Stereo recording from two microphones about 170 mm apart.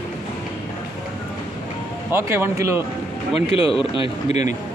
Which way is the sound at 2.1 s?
15° right (ahead or behind).